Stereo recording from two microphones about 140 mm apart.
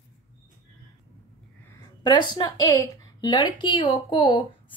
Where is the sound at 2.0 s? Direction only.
30° left (ahead or behind).